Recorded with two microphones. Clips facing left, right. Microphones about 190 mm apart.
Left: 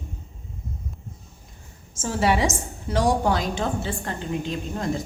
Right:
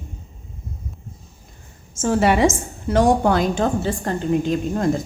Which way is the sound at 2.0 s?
60° right (ahead or behind).